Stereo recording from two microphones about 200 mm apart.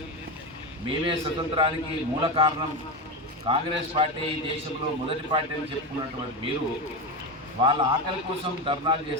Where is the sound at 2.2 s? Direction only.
25° right (ahead or behind).